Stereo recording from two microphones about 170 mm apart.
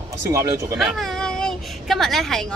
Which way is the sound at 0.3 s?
20° right (ahead or behind).